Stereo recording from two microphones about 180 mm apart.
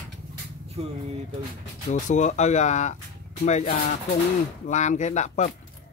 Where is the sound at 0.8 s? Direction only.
35° right (ahead or behind).